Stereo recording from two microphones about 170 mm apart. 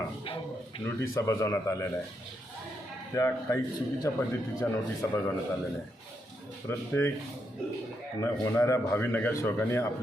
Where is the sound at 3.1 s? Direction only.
15° left (ahead or behind).